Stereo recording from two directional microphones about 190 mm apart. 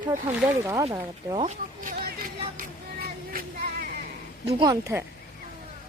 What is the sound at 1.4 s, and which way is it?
Speech, 45° right (ahead or behind).